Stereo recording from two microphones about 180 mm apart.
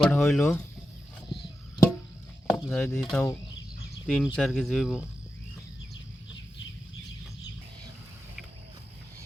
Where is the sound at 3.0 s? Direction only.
Centre (ahead or behind).